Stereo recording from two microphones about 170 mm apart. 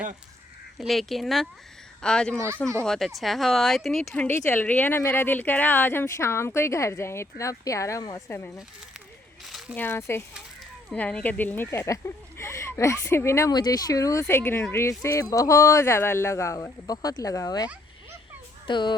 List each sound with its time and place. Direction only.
0.8 s speech: centre (ahead or behind); by 8.6 s 15° left (ahead or behind)
9.5 s a sound: centre (ahead or behind)
9.7 s speech: 15° left (ahead or behind)
18.7 s speech: 25° left (ahead or behind)